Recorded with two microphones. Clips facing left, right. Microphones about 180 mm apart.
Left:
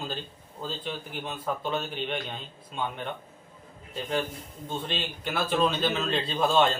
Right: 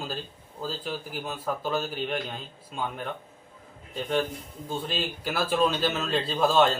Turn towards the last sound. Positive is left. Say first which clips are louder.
# right 2 dB
turn(degrees=0)  # may be behind; listen again after turning